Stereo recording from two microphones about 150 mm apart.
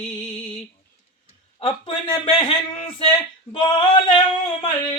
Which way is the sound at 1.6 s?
35° left (ahead or behind).